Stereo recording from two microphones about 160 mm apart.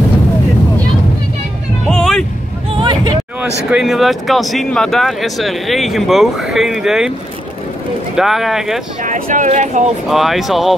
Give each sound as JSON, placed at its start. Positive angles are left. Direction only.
{"t": 1.9, "sound": "vehicle", "side_deg": 5}
{"t": 2.8, "sound": "a sound", "side_deg": -30}
{"t": 3.7, "sound": "speech", "side_deg": 0}
{"t": 8.2, "sound": "speech", "side_deg": 0}
{"t": 9.0, "sound": "speech", "side_deg": -55}
{"t": 10.0, "sound": "speech", "side_deg": 0}